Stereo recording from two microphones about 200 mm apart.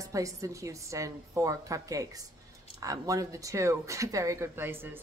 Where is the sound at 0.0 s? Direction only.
15° right (ahead or behind).